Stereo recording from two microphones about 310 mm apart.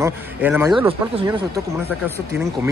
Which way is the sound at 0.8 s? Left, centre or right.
Centre.